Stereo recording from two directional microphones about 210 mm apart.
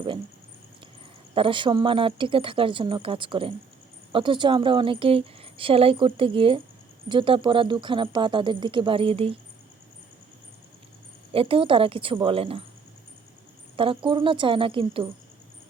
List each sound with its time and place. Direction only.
1.4 s a woman's voice: 25° right (ahead or behind)
11.3 s a woman's voice: 25° right (ahead or behind)
13.7 s a woman's voice: 25° right (ahead or behind)